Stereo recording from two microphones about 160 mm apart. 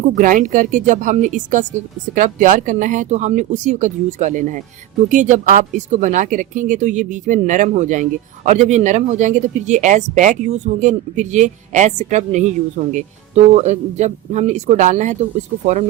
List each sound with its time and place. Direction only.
0.0 s speech: 55° right (ahead or behind)